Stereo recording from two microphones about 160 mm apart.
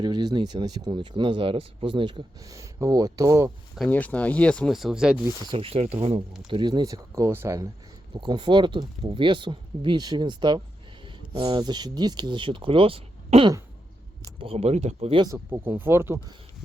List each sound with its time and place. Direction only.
0.0 s speech: 25° right (ahead or behind)
2.4 s speech: 20° right (ahead or behind)
3.8 s speech: 10° left (ahead or behind)
5.5 s speech: 35° right (ahead or behind)
6.5 s speech: 30° right (ahead or behind)
8.1 s speech: 30° right (ahead or behind)
15.2 s speech: 20° right (ahead or behind)